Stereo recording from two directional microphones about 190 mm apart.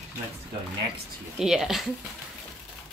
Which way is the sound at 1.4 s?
Centre (ahead or behind).